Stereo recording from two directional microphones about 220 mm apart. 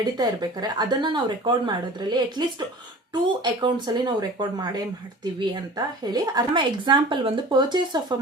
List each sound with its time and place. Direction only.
0.0 s speech: 20° right (ahead or behind)